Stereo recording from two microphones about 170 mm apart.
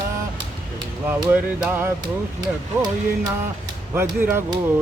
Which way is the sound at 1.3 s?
10° right (ahead or behind).